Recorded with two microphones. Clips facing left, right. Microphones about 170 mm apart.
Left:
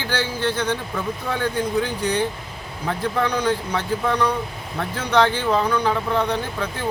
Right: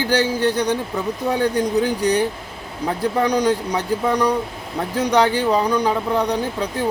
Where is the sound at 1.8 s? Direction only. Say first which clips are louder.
Right 6 dB; 40° right (ahead or behind).